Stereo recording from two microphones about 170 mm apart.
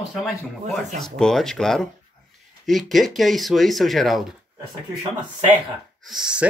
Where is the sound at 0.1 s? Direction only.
Centre (ahead or behind).